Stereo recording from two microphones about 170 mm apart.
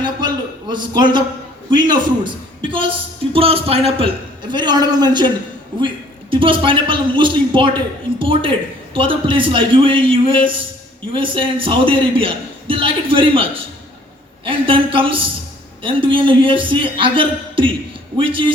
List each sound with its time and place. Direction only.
0.0 s a sound: 25° right (ahead or behind)
1.7 s a man's voice: 25° right (ahead or behind)
6.3 s a man's voice: 30° right (ahead or behind)